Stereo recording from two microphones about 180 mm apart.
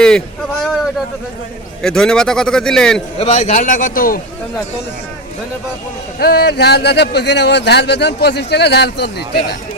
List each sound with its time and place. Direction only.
1.8 s a man's voice: 5° left (ahead or behind)
3.2 s a man's voice: 40° left (ahead or behind)
6.1 s speech: 60° left (ahead or behind)